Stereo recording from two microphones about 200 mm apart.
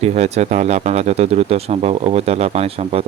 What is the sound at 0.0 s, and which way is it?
Speech, 35° right (ahead or behind).